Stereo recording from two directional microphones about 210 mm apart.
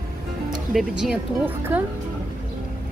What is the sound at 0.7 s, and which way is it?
Speech, 5° right (ahead or behind).